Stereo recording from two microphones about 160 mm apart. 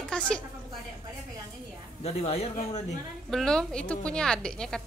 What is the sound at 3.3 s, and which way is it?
A woman's voice, 5° left (ahead or behind).